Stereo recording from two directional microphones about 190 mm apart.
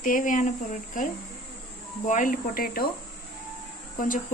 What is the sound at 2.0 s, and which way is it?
Speech, 45° left (ahead or behind).